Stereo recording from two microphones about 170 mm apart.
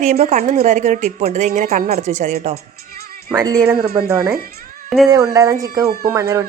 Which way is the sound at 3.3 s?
20° right (ahead or behind).